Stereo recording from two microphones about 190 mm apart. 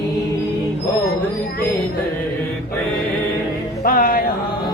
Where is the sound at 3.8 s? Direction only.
50° left (ahead or behind).